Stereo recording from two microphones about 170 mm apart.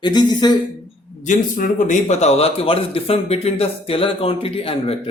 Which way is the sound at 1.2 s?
50° left (ahead or behind).